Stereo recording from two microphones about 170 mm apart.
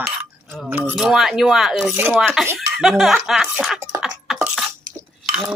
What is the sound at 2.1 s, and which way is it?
Cutlery, centre (ahead or behind).